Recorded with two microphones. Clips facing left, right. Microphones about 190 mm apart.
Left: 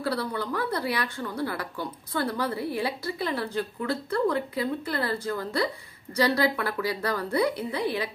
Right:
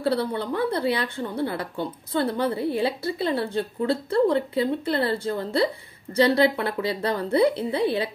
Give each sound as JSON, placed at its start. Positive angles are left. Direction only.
{"t": 0.0, "sound": "a woman's voice", "side_deg": -25}